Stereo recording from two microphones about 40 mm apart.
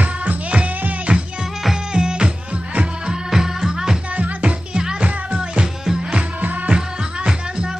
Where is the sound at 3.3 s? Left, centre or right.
Centre.